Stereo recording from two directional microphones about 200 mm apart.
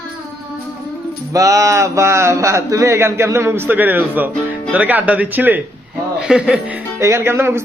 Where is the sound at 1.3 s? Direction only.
15° right (ahead or behind).